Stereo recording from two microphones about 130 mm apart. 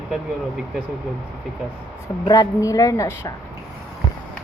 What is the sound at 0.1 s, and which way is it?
Speech, 5° right (ahead or behind).